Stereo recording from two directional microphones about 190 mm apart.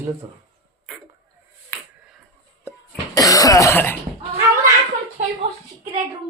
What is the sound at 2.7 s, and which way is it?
Cough, 20° left (ahead or behind).